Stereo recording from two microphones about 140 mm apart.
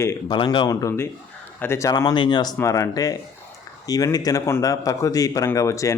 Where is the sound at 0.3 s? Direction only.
35° left (ahead or behind).